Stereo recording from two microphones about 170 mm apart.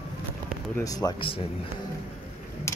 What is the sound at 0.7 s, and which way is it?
Speech, 20° left (ahead or behind).